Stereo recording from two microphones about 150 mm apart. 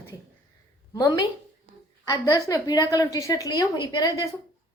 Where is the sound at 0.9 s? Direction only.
25° left (ahead or behind).